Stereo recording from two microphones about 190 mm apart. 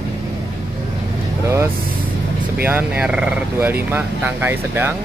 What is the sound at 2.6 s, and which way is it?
Speech, 10° right (ahead or behind).